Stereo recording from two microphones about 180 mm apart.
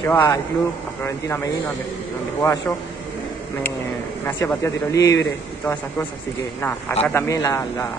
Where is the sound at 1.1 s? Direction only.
15° left (ahead or behind).